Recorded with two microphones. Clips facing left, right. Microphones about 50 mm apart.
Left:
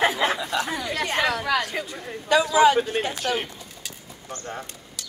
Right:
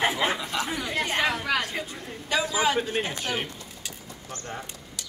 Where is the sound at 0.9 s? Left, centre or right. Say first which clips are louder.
Left 1 dB; left.